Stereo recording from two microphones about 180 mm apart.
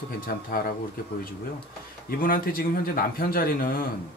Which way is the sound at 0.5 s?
55° left (ahead or behind).